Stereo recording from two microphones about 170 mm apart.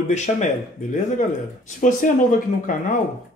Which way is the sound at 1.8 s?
50° left (ahead or behind).